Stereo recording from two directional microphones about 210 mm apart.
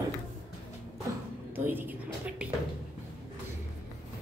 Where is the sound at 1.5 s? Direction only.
10° right (ahead or behind).